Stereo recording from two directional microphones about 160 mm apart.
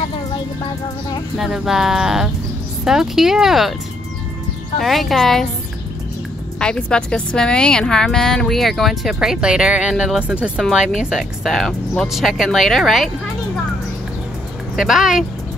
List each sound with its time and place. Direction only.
1.4 s a woman's voice: centre (ahead or behind)
4.7 s a woman's voice: centre (ahead or behind)
6.6 s a woman's voice: 5° left (ahead or behind)
14.8 s a woman's voice: 5° right (ahead or behind)